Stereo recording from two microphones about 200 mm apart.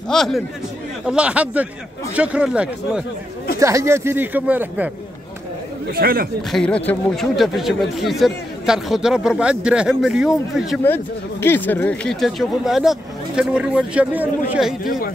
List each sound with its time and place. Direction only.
0.1 s speech: centre (ahead or behind)
5.9 s speech: 50° right (ahead or behind)
6.5 s speech: 5° left (ahead or behind)
11.4 s speech: 10° left (ahead or behind)
14.9 s speech: 45° left (ahead or behind)